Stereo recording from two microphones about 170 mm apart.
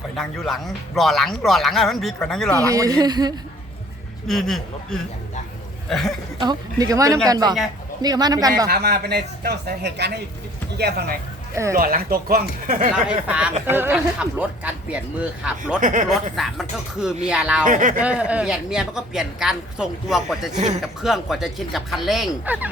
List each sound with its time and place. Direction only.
0.2 s a woman's voice: centre (ahead or behind)
2.6 s speech: 20° right (ahead or behind)
4.3 s a woman's voice: centre (ahead or behind)
6.4 s speech: 25° right (ahead or behind)
8.7 s speech: 70° right (ahead or behind)
11.5 s speech: 15° right (ahead or behind)
11.8 s speech: 60° right (ahead or behind)
13.1 s speech: 5° right (ahead or behind)
15.8 s speech: 50° right (ahead or behind)
16.3 s a woman's voice: centre (ahead or behind)
17.7 s speech: 50° right (ahead or behind)
18.0 s a woman's voice: 5° right (ahead or behind)